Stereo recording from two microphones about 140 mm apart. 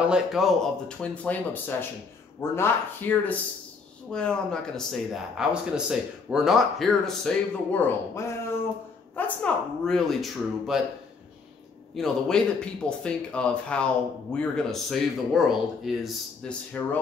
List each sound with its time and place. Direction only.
0.1 s speech: centre (ahead or behind)
7.7 s speech: 15° left (ahead or behind)
9.1 s speech: 5° left (ahead or behind)
11.9 s speech: 5° left (ahead or behind)
16.7 s speech: 10° left (ahead or behind)